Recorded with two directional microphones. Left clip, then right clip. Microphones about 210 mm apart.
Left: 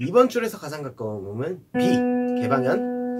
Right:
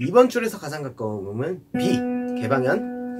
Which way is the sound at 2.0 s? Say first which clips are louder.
Left 4 dB; 15° left (ahead or behind).